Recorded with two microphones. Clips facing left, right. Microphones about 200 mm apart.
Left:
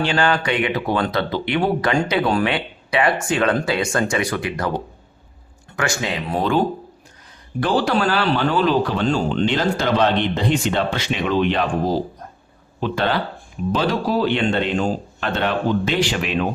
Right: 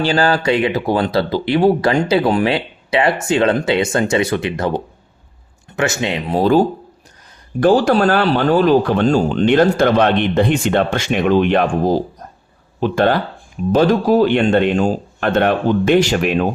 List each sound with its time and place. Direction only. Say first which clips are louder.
0.0 s speech: right 4 dB; 35° right (ahead or behind)
6.4 s speech: right 7 dB; 35° right (ahead or behind)